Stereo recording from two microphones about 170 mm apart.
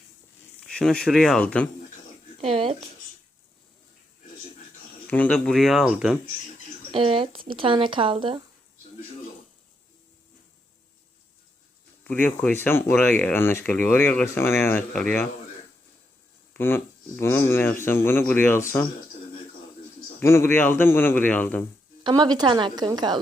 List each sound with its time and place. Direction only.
0.6 s speech: 5° left (ahead or behind)
2.4 s speech: 35° right (ahead or behind)
5.0 s speech: 10° left (ahead or behind)
6.9 s speech: 30° right (ahead or behind)
12.0 s speech: 10° left (ahead or behind)
16.6 s speech: 15° left (ahead or behind)
20.1 s speech: 15° left (ahead or behind)
22.0 s a woman's voice: 25° right (ahead or behind)